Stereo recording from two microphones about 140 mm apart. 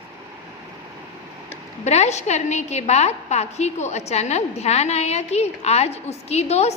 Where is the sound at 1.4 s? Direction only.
50° left (ahead or behind).